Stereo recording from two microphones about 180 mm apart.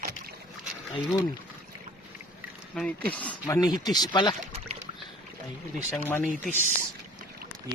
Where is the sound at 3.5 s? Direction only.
20° left (ahead or behind).